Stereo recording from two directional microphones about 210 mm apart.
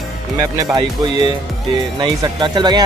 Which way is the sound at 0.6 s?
20° right (ahead or behind).